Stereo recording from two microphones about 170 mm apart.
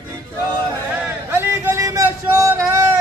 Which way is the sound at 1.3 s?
15° right (ahead or behind).